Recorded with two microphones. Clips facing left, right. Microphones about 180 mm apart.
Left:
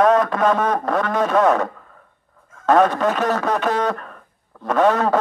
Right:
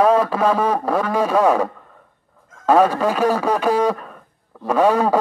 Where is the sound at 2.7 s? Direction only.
10° right (ahead or behind).